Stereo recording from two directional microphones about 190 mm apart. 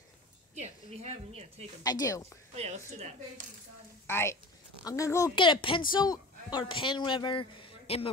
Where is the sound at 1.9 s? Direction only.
20° left (ahead or behind).